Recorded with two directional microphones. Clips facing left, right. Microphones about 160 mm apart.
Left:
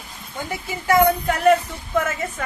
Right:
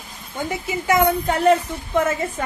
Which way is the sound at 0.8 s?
25° right (ahead or behind).